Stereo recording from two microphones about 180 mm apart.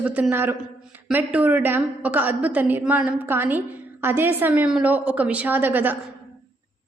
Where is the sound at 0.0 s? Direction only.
10° right (ahead or behind).